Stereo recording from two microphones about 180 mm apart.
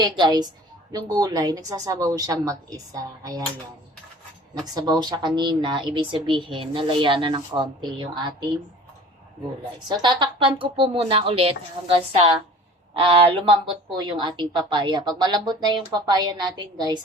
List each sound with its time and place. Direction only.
0.0 s a woman's voice: 25° right (ahead or behind)
4.6 s a woman's voice: 20° right (ahead or behind)
10.0 s a woman's voice: 25° right (ahead or behind)